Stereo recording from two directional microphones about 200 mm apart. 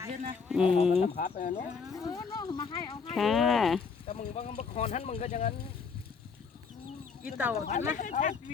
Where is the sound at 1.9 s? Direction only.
20° left (ahead or behind).